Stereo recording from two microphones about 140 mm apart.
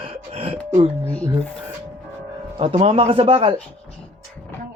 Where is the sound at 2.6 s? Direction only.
40° right (ahead or behind).